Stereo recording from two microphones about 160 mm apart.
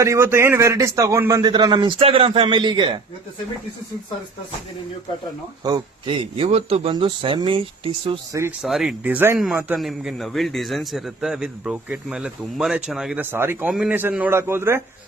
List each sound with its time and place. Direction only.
0.0 s a man's voice: 15° right (ahead or behind)
2.0 s speech: 35° right (ahead or behind)
5.6 s speech: 30° right (ahead or behind)
8.3 s speech: 15° right (ahead or behind)
8.6 s speech: centre (ahead or behind)
9.7 s a man's voice: centre (ahead or behind)
13.3 s speech: 15° right (ahead or behind)